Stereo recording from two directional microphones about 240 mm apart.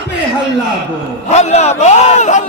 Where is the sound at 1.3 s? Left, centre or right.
Left.